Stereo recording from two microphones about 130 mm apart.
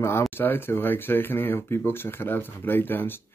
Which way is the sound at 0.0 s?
20° left (ahead or behind).